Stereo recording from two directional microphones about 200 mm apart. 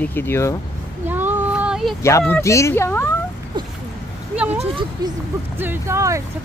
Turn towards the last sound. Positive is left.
turn(degrees=-15)  # may be behind; listen again after turning